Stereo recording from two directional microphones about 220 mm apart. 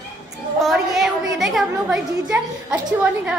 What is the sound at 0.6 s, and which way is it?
A woman's voice, centre (ahead or behind).